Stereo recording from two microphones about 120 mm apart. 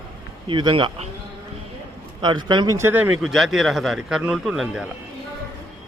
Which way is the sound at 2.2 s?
40° right (ahead or behind).